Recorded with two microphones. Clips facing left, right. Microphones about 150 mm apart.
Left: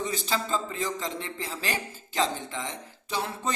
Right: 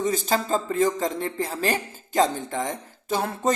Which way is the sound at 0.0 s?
45° right (ahead or behind).